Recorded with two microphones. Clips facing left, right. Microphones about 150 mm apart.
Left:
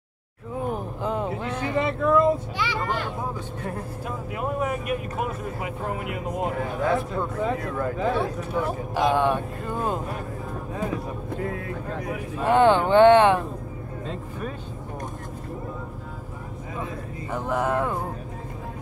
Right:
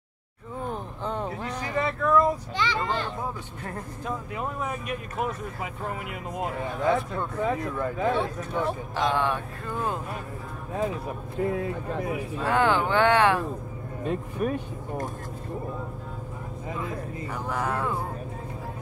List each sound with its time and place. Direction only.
0.7 s a sound: 5° left (ahead or behind)
1.8 s speech: 15° left (ahead or behind)
4.4 s speech: 5° left (ahead or behind)
12.4 s speech: 20° left (ahead or behind)
17.3 s speech: 20° left (ahead or behind)